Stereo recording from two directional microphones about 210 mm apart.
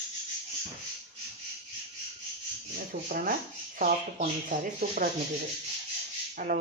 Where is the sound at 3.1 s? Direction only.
45° right (ahead or behind).